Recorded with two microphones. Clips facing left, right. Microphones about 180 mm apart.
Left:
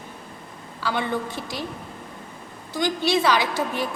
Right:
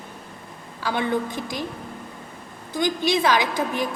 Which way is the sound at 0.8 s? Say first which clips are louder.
Right 2 dB; 15° right (ahead or behind).